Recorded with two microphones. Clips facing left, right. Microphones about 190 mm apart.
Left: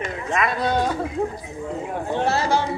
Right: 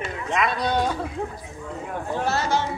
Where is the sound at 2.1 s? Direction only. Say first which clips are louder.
Left 3 dB; 30° left (ahead or behind).